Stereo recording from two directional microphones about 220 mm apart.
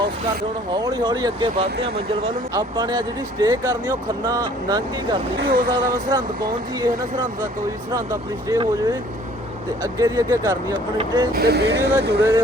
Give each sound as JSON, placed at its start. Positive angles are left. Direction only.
{"t": 0.8, "sound": "speech", "side_deg": -15}
{"t": 5.4, "sound": "speech", "side_deg": -40}
{"t": 6.1, "sound": "speech", "side_deg": -15}
{"t": 7.9, "sound": "speech", "side_deg": -15}
{"t": 11.3, "sound": "speech", "side_deg": -45}